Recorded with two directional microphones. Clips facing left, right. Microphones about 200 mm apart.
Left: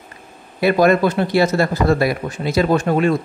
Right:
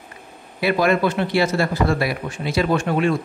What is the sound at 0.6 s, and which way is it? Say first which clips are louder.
A man's voice: left 4 dB; 45° left (ahead or behind).